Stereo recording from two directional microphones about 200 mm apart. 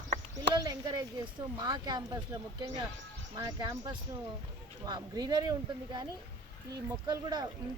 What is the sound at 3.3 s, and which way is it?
Speech, 20° right (ahead or behind).